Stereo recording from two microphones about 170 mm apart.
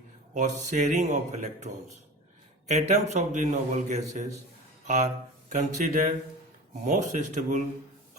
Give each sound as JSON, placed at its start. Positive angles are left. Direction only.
{"t": 0.3, "sound": "a man's voice", "side_deg": -45}
{"t": 5.5, "sound": "a man's voice", "side_deg": -50}